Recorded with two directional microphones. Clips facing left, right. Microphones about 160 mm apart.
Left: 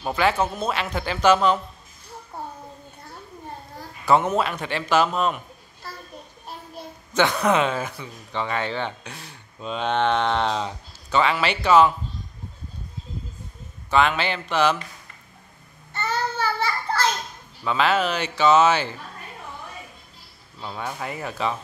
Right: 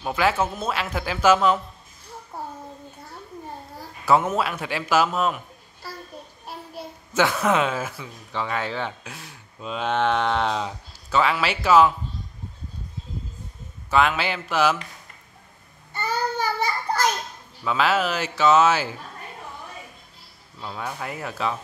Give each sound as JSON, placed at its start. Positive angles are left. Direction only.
{"t": 0.0, "sound": "a man's voice", "side_deg": -5}
{"t": 4.0, "sound": "a man's voice", "side_deg": -5}
{"t": 13.8, "sound": "a man's voice", "side_deg": -5}
{"t": 15.9, "sound": "child singing", "side_deg": -10}
{"t": 17.6, "sound": "a man's voice", "side_deg": -5}
{"t": 20.6, "sound": "a man's voice", "side_deg": 0}